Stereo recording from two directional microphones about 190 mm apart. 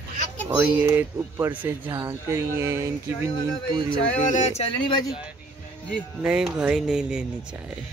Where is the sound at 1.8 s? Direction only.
25° right (ahead or behind).